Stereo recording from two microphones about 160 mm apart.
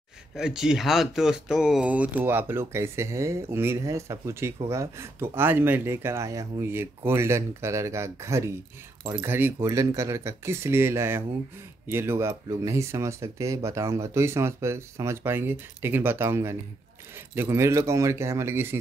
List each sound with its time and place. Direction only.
0.4 s speech: 5° right (ahead or behind)